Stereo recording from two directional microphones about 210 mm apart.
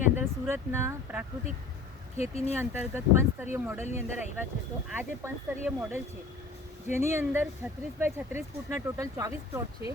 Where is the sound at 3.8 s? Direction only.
35° left (ahead or behind).